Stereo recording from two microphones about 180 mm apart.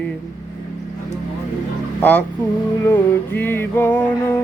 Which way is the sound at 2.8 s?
10° left (ahead or behind).